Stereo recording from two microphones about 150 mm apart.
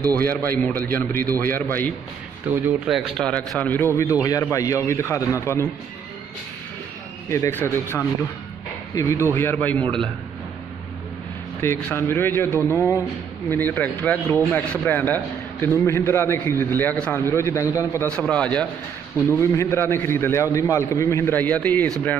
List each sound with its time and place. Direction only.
0.2 s speech: 15° left (ahead or behind)
2.4 s speech: 10° right (ahead or behind)
3.2 s a man's voice: 10° left (ahead or behind)
7.2 s speech: 15° left (ahead or behind)
11.6 s speech: 15° left (ahead or behind)
18.0 s speech: 10° left (ahead or behind)
19.3 s speech: 20° left (ahead or behind)